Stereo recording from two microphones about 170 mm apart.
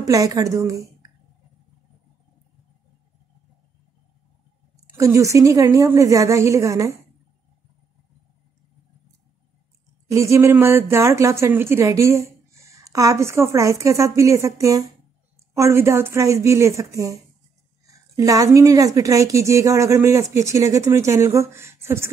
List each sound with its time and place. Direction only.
0.0 s a woman's voice: 20° right (ahead or behind)
4.9 s a woman's voice: 20° right (ahead or behind)
10.0 s speech: 20° right (ahead or behind)